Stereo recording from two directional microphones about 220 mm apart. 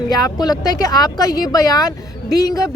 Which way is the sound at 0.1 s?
15° left (ahead or behind).